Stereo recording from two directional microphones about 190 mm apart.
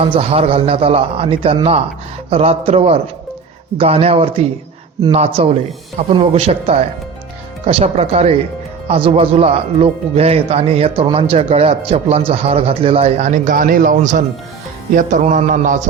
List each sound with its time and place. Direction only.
0.0 s a man's voice: 30° right (ahead or behind)